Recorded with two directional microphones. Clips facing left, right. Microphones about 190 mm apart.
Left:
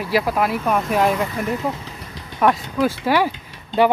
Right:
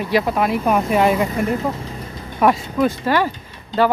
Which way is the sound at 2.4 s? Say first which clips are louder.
Right 2 dB; centre (ahead or behind).